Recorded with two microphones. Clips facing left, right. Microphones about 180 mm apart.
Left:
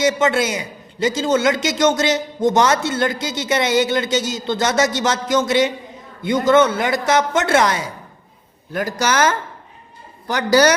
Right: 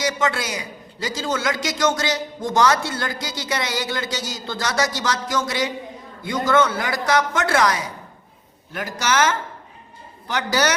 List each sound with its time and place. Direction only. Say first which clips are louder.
0.0 s a man's voice: left 6 dB; 25° left (ahead or behind)
8.7 s speech: left 3 dB; 40° left (ahead or behind)